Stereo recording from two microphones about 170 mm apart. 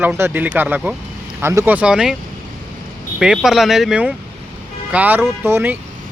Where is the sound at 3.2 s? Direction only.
5° right (ahead or behind).